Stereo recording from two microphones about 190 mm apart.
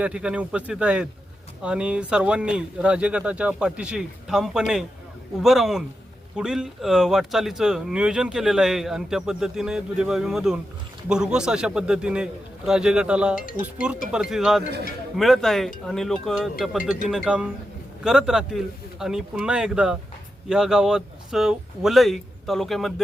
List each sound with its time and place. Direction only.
0.0 s speech: 5° right (ahead or behind)